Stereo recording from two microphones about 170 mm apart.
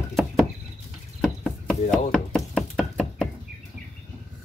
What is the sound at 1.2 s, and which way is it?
Knock, 5° left (ahead or behind).